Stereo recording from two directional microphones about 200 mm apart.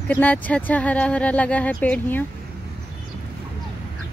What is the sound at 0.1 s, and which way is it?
Speech, 10° left (ahead or behind).